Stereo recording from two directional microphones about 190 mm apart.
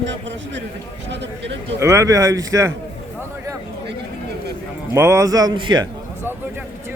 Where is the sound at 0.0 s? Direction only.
70° right (ahead or behind).